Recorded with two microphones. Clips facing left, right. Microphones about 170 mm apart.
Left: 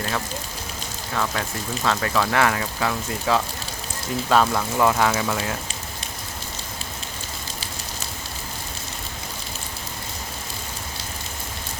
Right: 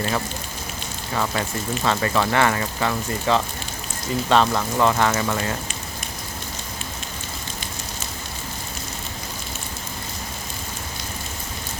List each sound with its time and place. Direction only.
1.1 s speech: 5° right (ahead or behind)